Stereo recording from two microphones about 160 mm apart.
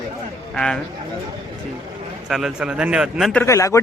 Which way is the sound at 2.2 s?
Centre (ahead or behind).